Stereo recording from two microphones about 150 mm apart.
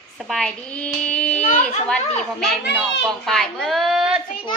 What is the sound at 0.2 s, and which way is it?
A child's voice, 5° left (ahead or behind).